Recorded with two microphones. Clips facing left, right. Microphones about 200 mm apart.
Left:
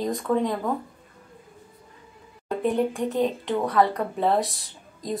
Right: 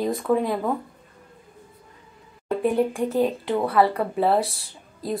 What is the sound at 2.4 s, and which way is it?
A woman's voice, 10° right (ahead or behind).